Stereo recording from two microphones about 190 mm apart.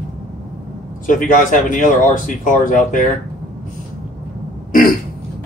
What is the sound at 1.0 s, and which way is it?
Speech, 45° left (ahead or behind).